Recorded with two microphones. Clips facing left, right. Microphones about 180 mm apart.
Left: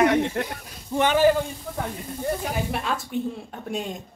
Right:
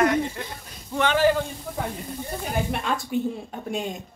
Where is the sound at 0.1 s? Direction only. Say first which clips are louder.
Left 3 dB; 70° left (ahead or behind).